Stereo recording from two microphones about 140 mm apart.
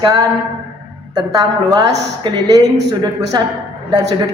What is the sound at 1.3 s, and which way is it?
A woman's voice, 30° right (ahead or behind).